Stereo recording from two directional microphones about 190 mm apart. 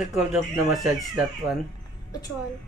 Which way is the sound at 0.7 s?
Centre (ahead or behind).